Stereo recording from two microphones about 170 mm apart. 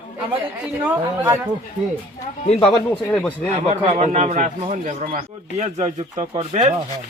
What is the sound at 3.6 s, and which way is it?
A man's voice, 40° right (ahead or behind).